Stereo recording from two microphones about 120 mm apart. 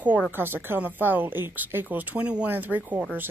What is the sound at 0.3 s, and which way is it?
Speech, 15° right (ahead or behind).